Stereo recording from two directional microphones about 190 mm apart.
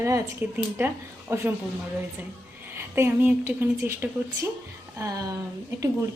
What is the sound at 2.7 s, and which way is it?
A woman's voice, 15° right (ahead or behind).